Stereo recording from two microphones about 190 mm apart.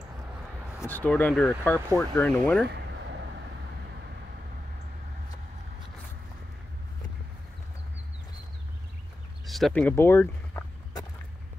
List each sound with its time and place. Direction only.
0.7 s speech: 10° left (ahead or behind)
9.5 s speech: centre (ahead or behind)